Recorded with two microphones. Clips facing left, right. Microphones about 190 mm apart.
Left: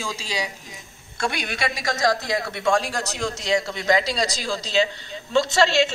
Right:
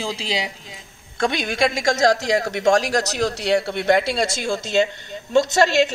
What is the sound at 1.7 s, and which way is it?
Speech, 90° right.